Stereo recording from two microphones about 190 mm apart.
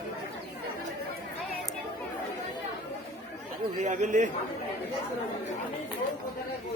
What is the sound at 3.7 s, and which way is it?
Speech, 40° right (ahead or behind).